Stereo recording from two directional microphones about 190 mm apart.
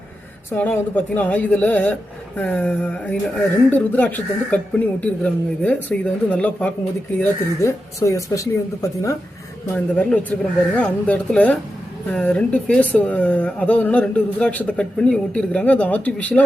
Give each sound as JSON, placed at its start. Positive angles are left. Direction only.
{"t": 0.5, "sound": "speech", "side_deg": 10}